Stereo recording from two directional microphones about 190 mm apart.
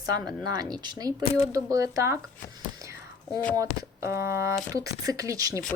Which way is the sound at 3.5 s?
15° right (ahead or behind).